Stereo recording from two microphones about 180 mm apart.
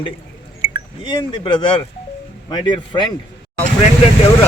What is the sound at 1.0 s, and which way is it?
Speech, 25° left (ahead or behind).